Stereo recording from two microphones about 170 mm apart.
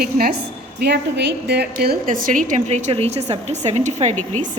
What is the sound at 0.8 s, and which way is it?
Speech, 80° right.